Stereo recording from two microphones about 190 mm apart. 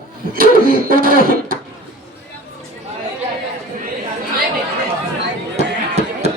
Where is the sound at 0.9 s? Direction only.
50° right (ahead or behind).